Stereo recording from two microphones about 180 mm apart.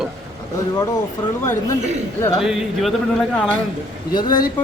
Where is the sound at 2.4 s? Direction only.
Centre (ahead or behind).